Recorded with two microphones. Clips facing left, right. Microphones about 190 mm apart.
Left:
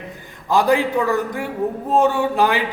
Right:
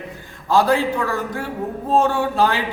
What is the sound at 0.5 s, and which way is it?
A man's voice, 15° left (ahead or behind).